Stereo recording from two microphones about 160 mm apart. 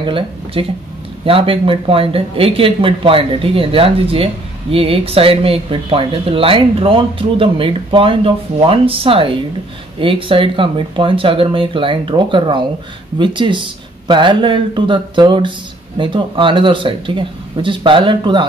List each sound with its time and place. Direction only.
0.0 s speech: 30° right (ahead or behind)